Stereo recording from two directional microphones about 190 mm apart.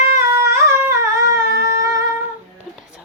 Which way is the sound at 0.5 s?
15° right (ahead or behind).